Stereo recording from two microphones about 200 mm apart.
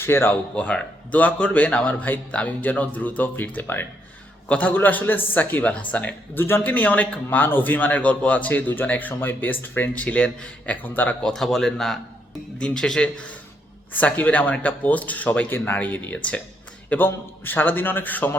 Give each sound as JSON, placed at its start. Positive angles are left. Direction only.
{"t": 0.0, "sound": "a man's voice", "side_deg": 10}